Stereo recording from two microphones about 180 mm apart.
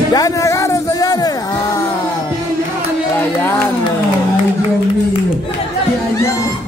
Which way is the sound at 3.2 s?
10° left (ahead or behind).